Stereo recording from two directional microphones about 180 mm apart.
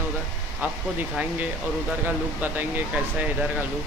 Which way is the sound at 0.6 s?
10° right (ahead or behind).